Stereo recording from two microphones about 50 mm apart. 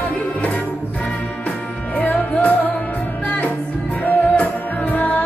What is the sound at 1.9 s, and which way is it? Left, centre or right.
Music, left.